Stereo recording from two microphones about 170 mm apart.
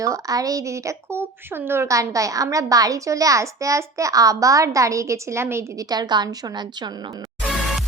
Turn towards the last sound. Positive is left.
turn(degrees=0)  # may be behind; listen again after turning